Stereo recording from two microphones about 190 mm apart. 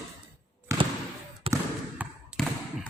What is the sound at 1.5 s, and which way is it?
Basketball bounce, 30° right (ahead or behind).